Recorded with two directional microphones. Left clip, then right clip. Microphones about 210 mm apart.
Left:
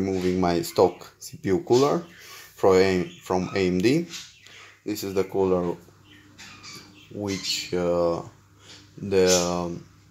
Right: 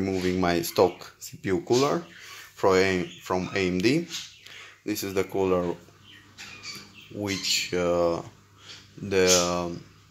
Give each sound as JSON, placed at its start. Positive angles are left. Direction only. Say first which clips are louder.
{"t": 0.4, "sound": "speech", "louder": "left 1 dB", "side_deg": 5}
{"t": 4.8, "sound": "speech", "louder": "left 1 dB", "side_deg": 5}
{"t": 7.2, "sound": "speech", "louder": "right 1 dB", "side_deg": 5}